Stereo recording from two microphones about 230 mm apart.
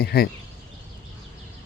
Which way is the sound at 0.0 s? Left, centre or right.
Left.